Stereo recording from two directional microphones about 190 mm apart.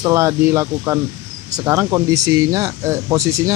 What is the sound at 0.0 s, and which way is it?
Speech, 15° right (ahead or behind).